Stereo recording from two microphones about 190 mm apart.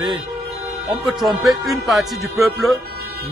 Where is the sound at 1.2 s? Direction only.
Centre (ahead or behind).